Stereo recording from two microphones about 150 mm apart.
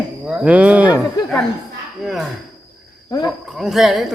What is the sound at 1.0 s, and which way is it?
Speech, 5° left (ahead or behind).